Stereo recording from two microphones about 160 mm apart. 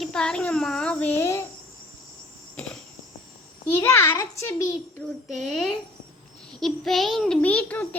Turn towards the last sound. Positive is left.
turn(degrees=10)  # may be behind; listen again after turning